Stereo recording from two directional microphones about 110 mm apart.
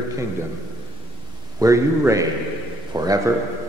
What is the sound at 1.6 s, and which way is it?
A man's voice, 30° right (ahead or behind).